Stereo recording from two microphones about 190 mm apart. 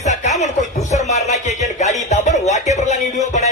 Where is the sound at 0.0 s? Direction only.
35° left (ahead or behind).